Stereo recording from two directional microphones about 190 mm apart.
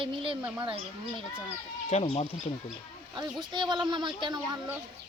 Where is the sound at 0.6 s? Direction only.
25° right (ahead or behind).